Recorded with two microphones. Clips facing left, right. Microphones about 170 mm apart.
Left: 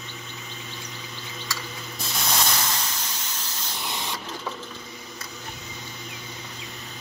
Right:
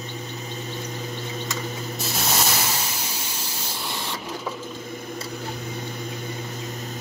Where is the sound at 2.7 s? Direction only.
10° right (ahead or behind).